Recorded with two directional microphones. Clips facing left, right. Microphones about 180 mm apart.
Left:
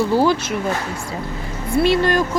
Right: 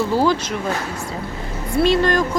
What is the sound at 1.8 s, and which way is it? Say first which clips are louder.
Speech: even; 10° left (ahead or behind).